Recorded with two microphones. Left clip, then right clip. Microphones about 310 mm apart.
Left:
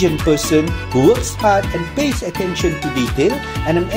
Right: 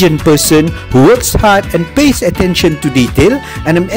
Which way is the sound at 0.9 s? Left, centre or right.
Right.